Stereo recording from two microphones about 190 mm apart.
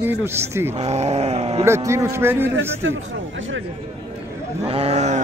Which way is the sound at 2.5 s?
90° right.